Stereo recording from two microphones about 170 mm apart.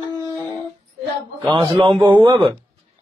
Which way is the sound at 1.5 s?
30° right (ahead or behind).